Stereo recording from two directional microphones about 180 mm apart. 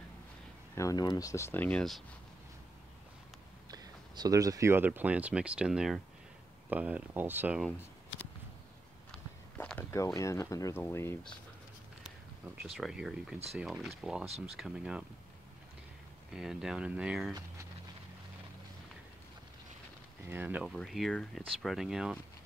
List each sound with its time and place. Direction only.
0.7 s speech: 20° left (ahead or behind); by 2.0 s centre (ahead or behind)
3.7 s speech: 20° right (ahead or behind); by 7.7 s 5° right (ahead or behind)
9.6 s speech: 10° left (ahead or behind)
12.7 s speech: centre (ahead or behind)
16.3 s speech: 5° right (ahead or behind)
20.2 s speech: 10° right (ahead or behind)